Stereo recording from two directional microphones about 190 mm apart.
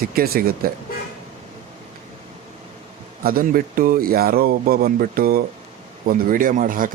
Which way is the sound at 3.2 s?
50° right (ahead or behind).